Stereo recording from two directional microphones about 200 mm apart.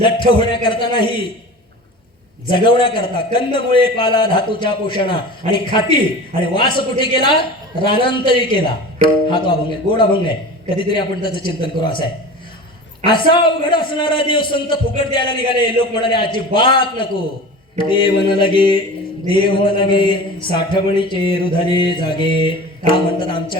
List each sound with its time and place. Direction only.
0.0 s a man's voice: 25° left (ahead or behind)
2.5 s a man's voice: 25° left (ahead or behind)
13.1 s a man's voice: 25° left (ahead or behind)